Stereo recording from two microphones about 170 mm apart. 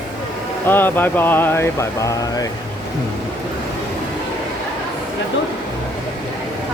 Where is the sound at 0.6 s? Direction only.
10° left (ahead or behind).